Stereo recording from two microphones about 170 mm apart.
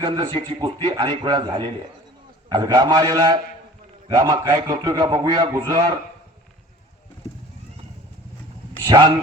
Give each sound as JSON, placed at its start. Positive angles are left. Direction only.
{"t": 0.0, "sound": "a man's voice", "side_deg": -25}
{"t": 8.9, "sound": "a man's voice", "side_deg": -25}